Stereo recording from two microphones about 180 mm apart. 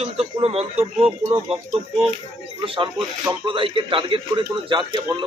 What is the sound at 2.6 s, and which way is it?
A man's voice, 30° right (ahead or behind).